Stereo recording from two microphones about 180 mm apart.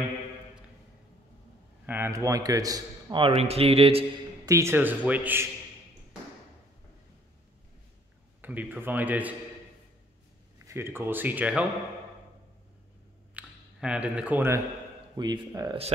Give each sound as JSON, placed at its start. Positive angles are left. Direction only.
{"t": 1.9, "sound": "a man's voice", "side_deg": -15}
{"t": 4.5, "sound": "a man's voice", "side_deg": -15}
{"t": 8.4, "sound": "a man's voice", "side_deg": -10}
{"t": 10.7, "sound": "a man's voice", "side_deg": -15}
{"t": 13.3, "sound": "a sound", "side_deg": -5}
{"t": 15.1, "sound": "a man's voice", "side_deg": -20}